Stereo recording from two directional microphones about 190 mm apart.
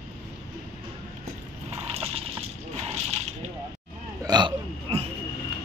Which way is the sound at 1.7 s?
30° right (ahead or behind).